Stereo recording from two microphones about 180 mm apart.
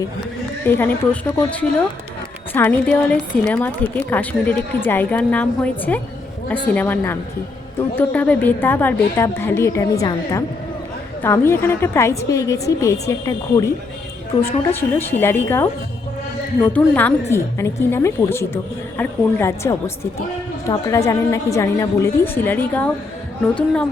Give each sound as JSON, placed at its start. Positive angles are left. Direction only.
{"t": 0.6, "sound": "a woman's voice", "side_deg": 10}